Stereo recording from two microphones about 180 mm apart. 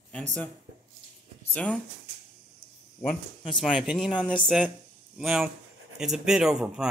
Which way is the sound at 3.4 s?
Centre (ahead or behind).